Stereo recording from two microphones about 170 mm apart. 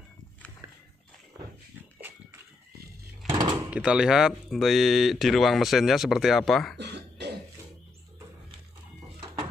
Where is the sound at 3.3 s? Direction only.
25° right (ahead or behind).